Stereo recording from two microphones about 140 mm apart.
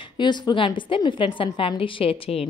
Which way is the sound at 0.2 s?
30° left (ahead or behind).